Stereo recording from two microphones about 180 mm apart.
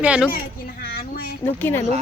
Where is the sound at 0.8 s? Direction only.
60° left (ahead or behind).